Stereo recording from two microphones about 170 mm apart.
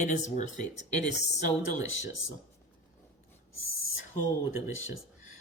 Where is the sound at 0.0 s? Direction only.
45° left (ahead or behind).